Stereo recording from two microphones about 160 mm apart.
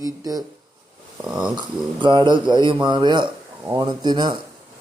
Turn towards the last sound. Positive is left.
turn(degrees=-25)  # may be behind; listen again after turning